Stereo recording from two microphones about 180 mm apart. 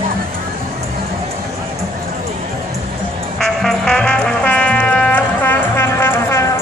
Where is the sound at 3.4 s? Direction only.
5° left (ahead or behind).